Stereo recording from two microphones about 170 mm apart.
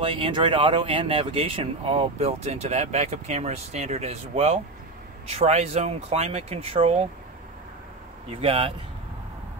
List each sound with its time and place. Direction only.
0.0 s speech: 30° right (ahead or behind)
8.3 s speech: 35° right (ahead or behind)